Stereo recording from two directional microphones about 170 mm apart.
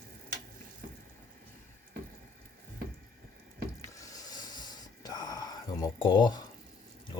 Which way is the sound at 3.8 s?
20° left (ahead or behind).